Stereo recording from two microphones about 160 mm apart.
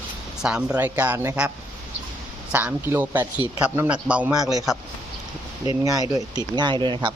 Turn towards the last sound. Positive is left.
turn(degrees=-30)  # may be behind; listen again after turning